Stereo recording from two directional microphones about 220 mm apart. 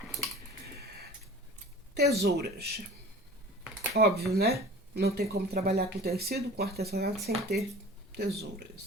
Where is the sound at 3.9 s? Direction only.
45° right (ahead or behind).